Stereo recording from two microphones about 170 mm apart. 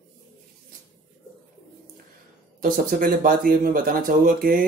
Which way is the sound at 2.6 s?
55° right (ahead or behind).